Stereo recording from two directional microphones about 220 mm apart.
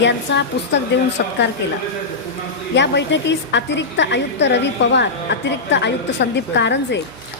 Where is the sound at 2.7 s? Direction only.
50° left (ahead or behind).